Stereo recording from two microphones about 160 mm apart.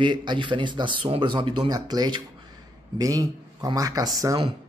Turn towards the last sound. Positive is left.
turn(degrees=-20)  # may be behind; listen again after turning